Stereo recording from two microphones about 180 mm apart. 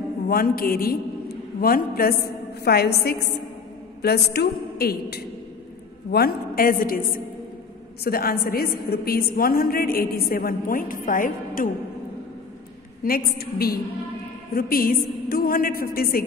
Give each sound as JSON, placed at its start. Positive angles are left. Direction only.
{"t": 0.3, "sound": "a man's voice", "side_deg": 55}
{"t": 13.0, "sound": "a woman's voice", "side_deg": 55}